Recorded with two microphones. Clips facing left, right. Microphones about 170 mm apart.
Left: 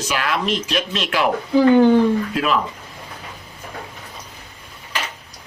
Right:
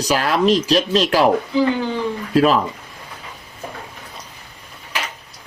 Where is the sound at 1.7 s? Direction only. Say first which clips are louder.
Left 10 dB; 55° left (ahead or behind).